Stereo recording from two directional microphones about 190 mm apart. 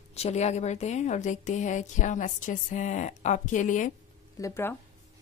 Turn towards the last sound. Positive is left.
turn(degrees=15)  # may be behind; listen again after turning